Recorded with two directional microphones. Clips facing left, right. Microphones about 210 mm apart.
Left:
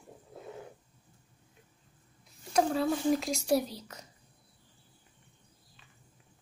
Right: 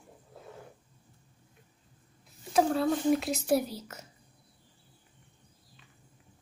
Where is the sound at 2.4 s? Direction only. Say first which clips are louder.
Right 2 dB; centre (ahead or behind).